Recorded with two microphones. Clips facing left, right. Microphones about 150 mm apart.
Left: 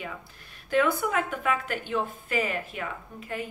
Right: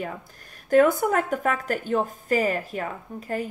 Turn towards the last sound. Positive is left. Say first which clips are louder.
# right 5 dB
turn(degrees=-40)  # may be behind; listen again after turning